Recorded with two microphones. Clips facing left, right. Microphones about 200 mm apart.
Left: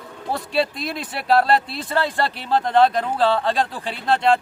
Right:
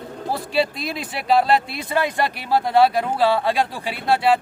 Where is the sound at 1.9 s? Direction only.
15° right (ahead or behind).